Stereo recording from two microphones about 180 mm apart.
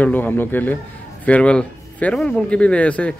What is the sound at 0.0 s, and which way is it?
A man's voice, 10° left (ahead or behind).